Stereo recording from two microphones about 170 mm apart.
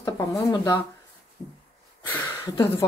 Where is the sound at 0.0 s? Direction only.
20° left (ahead or behind).